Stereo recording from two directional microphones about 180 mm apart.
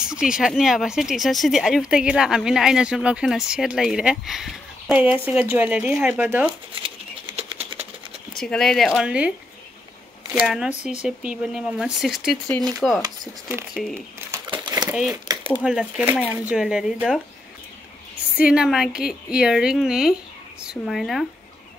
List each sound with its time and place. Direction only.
0.0 s speech: 5° right (ahead or behind)
7.3 s sewing machine: 35° right (ahead or behind)
8.4 s speech: 5° left (ahead or behind)
10.3 s speech: centre (ahead or behind)
10.7 s speech: 40° left (ahead or behind)
11.0 s speech: 5° right (ahead or behind)
14.5 s a sound: 25° right (ahead or behind)
14.9 s speech: 5° right (ahead or behind)
18.4 s speech: 5° right (ahead or behind)